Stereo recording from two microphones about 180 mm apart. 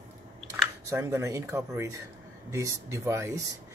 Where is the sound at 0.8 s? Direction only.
15° right (ahead or behind).